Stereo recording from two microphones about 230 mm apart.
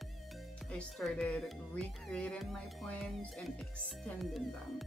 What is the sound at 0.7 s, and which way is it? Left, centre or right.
Speech, centre.